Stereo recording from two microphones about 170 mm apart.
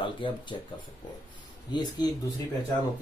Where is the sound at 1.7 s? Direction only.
25° left (ahead or behind).